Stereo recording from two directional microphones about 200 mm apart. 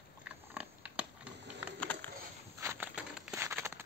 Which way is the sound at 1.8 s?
5° left (ahead or behind).